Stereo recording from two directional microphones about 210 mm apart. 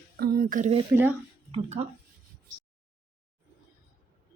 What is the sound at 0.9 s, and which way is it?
Speech, 10° right (ahead or behind).